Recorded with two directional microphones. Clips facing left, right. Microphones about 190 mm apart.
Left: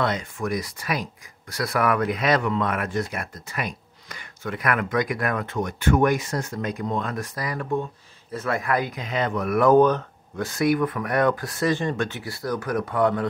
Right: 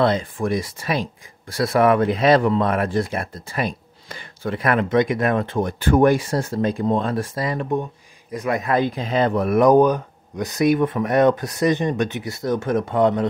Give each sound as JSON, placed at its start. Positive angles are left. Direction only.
{"t": 0.0, "sound": "a man's voice", "side_deg": -30}
{"t": 9.6, "sound": "a man's voice", "side_deg": -15}